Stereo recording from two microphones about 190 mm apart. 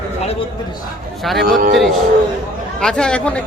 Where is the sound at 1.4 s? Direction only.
50° right (ahead or behind).